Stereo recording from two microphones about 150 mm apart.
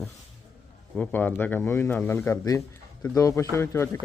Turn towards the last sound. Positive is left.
turn(degrees=15)  # may be behind; listen again after turning